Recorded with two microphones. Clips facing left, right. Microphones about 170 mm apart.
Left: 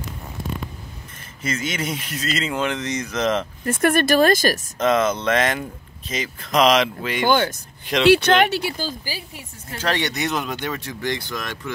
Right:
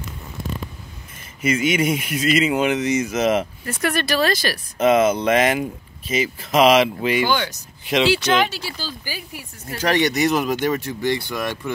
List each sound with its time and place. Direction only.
1.4 s speech: 10° right (ahead or behind)
3.6 s speech: 50° left (ahead or behind)
4.7 s speech: 10° right (ahead or behind)
7.2 s speech: 50° left (ahead or behind)
8.1 s speech: 60° left (ahead or behind)
9.0 s speech: 30° left (ahead or behind)
9.8 s speech: 10° right (ahead or behind)